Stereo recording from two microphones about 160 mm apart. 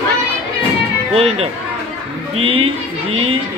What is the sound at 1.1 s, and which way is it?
Speech, 35° right (ahead or behind).